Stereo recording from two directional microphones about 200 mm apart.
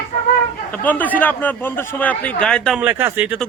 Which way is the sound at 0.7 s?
10° left (ahead or behind).